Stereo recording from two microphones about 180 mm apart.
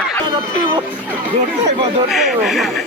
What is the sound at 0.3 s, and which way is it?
Speech, 25° right (ahead or behind).